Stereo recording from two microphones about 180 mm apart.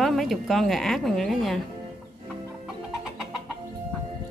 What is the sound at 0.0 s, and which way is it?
Speech, centre (ahead or behind).